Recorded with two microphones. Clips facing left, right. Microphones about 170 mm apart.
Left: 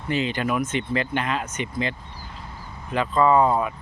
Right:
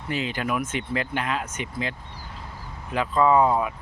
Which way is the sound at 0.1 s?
5° right (ahead or behind).